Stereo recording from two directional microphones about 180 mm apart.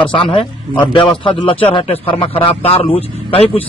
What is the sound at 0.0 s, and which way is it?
Speech, 30° left (ahead or behind).